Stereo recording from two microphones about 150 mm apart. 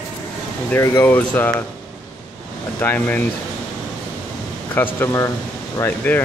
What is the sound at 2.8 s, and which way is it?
Speech, 15° left (ahead or behind).